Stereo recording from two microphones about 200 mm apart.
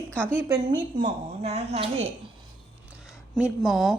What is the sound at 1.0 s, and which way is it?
Speech, 30° right (ahead or behind).